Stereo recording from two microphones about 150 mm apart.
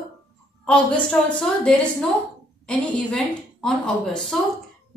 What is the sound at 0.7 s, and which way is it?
A woman's voice, 5° left (ahead or behind).